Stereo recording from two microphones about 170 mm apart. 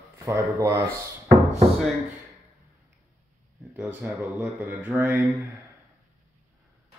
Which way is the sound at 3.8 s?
10° right (ahead or behind).